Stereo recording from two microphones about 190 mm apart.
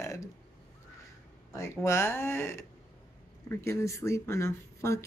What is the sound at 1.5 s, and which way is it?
Speech, 15° left (ahead or behind).